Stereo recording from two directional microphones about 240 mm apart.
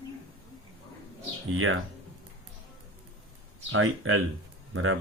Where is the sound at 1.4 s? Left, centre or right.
Right.